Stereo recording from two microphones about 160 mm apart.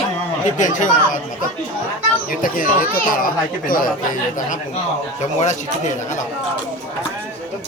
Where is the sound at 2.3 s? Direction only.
60° left (ahead or behind).